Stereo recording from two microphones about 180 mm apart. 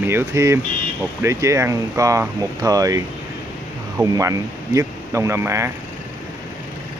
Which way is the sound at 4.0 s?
15° right (ahead or behind).